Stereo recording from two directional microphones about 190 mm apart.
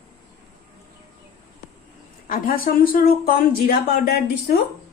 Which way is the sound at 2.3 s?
50° left (ahead or behind).